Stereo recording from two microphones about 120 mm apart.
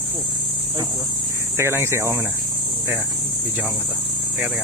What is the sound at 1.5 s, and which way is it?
Speech, 20° right (ahead or behind).